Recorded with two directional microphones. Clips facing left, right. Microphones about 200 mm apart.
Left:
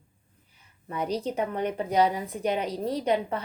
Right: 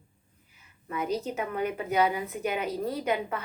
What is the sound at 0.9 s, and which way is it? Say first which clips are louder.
A woman's voice: left 1 dB; 35° left (ahead or behind).